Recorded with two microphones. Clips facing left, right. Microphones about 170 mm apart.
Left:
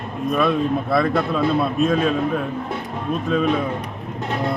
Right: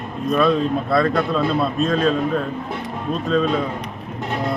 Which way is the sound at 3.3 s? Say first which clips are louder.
Right 1 dB; 15° left (ahead or behind).